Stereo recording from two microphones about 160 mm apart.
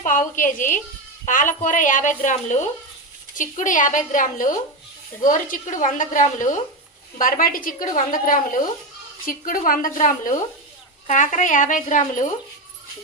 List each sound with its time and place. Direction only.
0.0 s a woman's voice: 55° left (ahead or behind)